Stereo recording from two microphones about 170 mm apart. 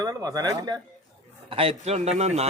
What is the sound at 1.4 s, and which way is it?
A man's voice, 35° right (ahead or behind).